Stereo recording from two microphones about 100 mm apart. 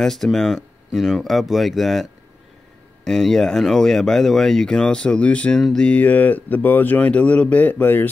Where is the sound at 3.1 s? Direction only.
5° left (ahead or behind).